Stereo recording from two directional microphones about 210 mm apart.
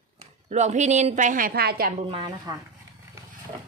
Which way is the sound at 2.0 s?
25° right (ahead or behind).